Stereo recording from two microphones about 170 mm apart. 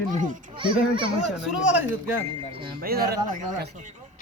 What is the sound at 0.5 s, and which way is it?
Speech, 30° right (ahead or behind).